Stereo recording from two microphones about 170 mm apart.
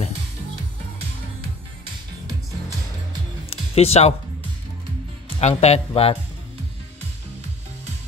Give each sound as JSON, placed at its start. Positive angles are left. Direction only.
{"t": 3.4, "sound": "music", "side_deg": 35}
{"t": 5.4, "sound": "speech", "side_deg": 40}